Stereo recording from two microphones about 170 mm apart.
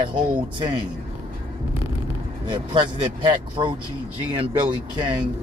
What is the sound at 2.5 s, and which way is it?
Speech, 30° right (ahead or behind).